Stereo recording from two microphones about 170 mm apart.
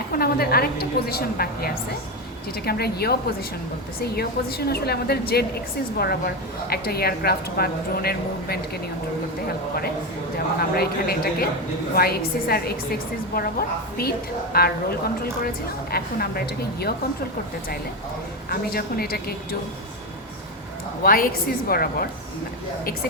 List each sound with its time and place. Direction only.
0.1 s a woman's voice: 65° left (ahead or behind)
10.3 s a woman's voice: 65° left (ahead or behind)
18.4 s a woman's voice: 60° left (ahead or behind)
21.0 s a woman's voice: 60° left (ahead or behind)